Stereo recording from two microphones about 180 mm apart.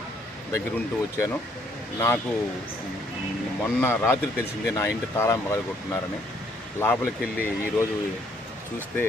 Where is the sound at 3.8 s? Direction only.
10° left (ahead or behind).